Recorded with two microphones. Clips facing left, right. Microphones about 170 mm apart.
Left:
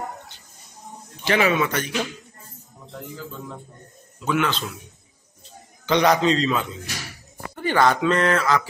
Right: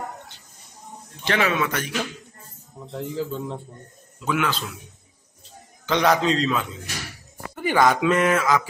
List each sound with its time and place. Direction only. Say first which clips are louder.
1.2 s a man's voice: left 2 dB; 5° left (ahead or behind)
3.2 s a man's voice: right 7 dB; 30° right (ahead or behind)
4.2 s speech: left 1 dB; 5° right (ahead or behind)
5.9 s a man's voice: left 2 dB; centre (ahead or behind)